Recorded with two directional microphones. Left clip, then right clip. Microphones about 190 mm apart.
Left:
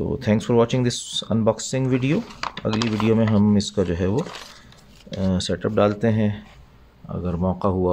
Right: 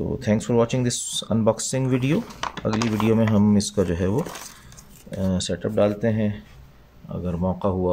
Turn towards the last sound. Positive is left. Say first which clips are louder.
# left 2 dB
turn(degrees=20)  # may be behind; listen again after turning